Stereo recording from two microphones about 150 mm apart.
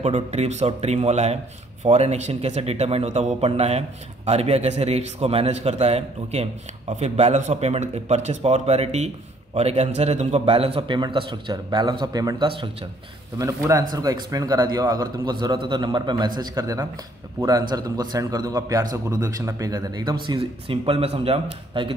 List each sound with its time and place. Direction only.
0.0 s a man's voice: 45° right (ahead or behind); by 20.2 s 25° right (ahead or behind)
20.3 s speech: 40° right (ahead or behind)